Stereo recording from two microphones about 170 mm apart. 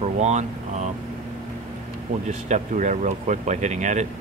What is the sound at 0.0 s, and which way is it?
Speech, 40° right (ahead or behind).